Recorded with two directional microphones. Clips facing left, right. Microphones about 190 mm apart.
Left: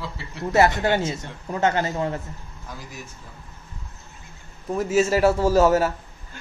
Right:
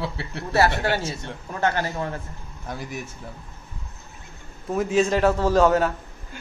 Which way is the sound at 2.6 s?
65° right (ahead or behind).